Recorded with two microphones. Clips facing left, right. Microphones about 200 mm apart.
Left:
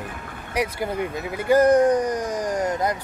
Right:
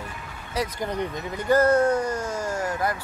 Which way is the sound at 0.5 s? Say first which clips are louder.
Left 3 dB; 10° left (ahead or behind).